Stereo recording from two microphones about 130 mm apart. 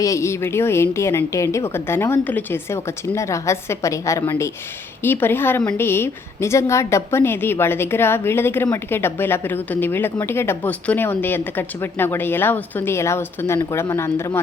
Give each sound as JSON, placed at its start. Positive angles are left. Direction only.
{"t": 0.0, "sound": "a woman's voice", "side_deg": 25}